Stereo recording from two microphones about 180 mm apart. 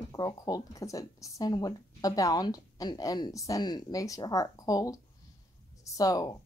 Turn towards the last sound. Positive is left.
turn(degrees=20)  # may be behind; listen again after turning